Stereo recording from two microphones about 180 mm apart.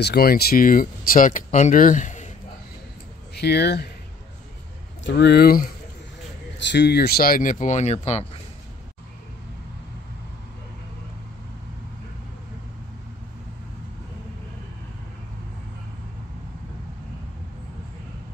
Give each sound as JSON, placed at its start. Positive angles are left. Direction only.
{"t": 0.0, "sound": "speech", "side_deg": 60}
{"t": 3.3, "sound": "speech", "side_deg": 65}
{"t": 5.0, "sound": "speech", "side_deg": 70}
{"t": 6.7, "sound": "speech", "side_deg": 70}